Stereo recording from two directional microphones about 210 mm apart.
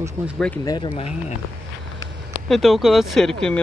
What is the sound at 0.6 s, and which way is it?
Speech, 20° left (ahead or behind).